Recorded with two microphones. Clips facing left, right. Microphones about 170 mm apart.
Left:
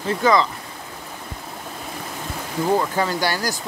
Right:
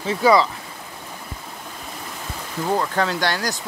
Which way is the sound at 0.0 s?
5° right (ahead or behind).